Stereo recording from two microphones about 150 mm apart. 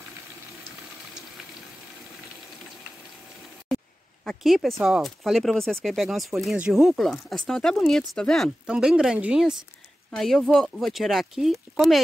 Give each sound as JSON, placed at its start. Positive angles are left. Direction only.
{"t": 4.2, "sound": "speech", "side_deg": 0}